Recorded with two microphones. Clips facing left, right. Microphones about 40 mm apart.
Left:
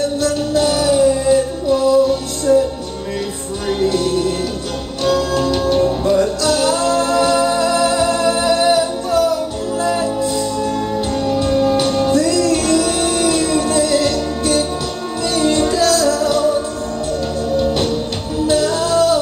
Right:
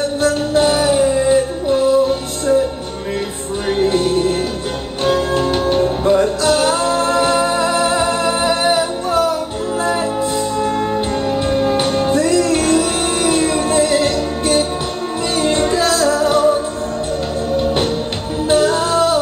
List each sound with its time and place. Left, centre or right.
0.2 s music: right
3.6 s music: right
11.2 s music: right
18.5 s music: right